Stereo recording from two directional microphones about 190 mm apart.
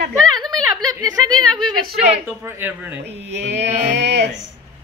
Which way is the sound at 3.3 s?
65° right (ahead or behind).